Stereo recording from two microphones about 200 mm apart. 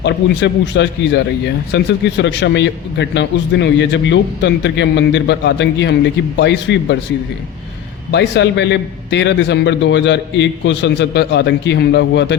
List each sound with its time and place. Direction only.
0.0 s a man's voice: 60° left (ahead or behind)
8.1 s a man's voice: 60° left (ahead or behind)